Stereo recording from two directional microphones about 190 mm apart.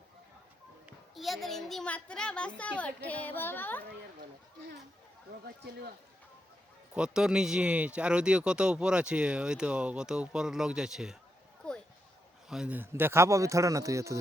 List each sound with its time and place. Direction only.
0.9 s speech: centre (ahead or behind)
6.9 s speech: 5° right (ahead or behind)
12.5 s a man's voice: 5° right (ahead or behind)